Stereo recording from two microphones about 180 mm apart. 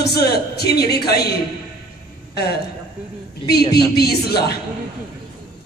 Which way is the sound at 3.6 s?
25° left (ahead or behind).